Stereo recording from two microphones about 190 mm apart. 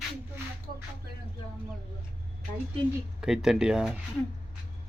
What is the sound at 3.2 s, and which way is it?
Speech, 5° right (ahead or behind).